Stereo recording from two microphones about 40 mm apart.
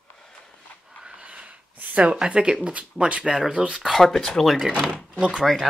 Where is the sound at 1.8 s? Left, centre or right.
Right.